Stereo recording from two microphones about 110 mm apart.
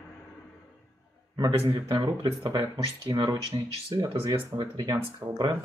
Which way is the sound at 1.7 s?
45° right (ahead or behind).